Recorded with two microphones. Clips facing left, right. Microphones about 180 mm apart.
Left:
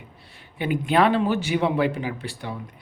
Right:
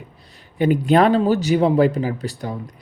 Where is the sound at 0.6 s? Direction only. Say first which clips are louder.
Right 5 dB; 40° right (ahead or behind).